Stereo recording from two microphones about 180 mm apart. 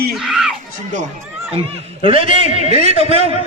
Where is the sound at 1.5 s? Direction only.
30° right (ahead or behind).